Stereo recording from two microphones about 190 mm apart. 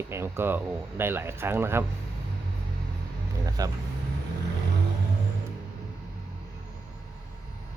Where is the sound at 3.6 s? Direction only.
20° right (ahead or behind).